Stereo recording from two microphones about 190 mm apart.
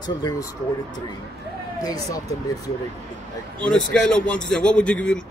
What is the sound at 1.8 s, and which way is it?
Speech, 20° left (ahead or behind).